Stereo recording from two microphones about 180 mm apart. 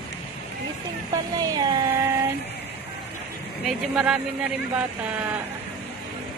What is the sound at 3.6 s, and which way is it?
Speech, 5° right (ahead or behind).